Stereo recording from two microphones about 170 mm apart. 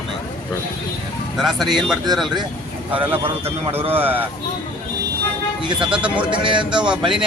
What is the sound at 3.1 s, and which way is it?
Speech, 35° right (ahead or behind).